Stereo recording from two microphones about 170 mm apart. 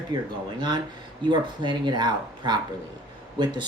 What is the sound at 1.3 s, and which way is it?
Speech, 25° right (ahead or behind).